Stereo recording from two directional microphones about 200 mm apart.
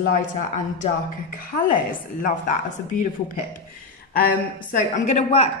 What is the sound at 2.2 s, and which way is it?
Speech, 40° left (ahead or behind).